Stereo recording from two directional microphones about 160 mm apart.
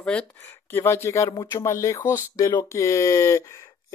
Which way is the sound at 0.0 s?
5° left (ahead or behind).